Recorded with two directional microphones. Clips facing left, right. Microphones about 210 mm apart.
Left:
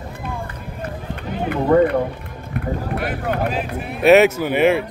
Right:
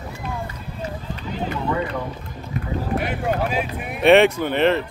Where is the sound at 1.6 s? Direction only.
50° left (ahead or behind).